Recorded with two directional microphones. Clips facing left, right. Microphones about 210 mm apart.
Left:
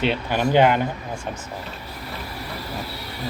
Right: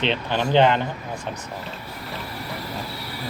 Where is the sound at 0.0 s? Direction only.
10° left (ahead or behind).